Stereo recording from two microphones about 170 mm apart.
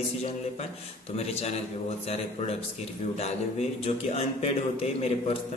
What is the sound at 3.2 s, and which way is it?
Speech, 40° left (ahead or behind).